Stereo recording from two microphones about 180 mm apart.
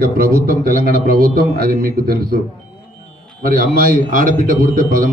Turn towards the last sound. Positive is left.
turn(degrees=-50)  # may be behind; listen again after turning